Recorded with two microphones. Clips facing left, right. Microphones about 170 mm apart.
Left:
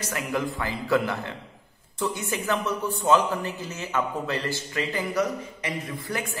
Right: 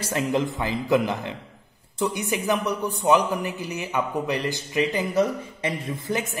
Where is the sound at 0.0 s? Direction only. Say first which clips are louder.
Right 4 dB; 25° right (ahead or behind).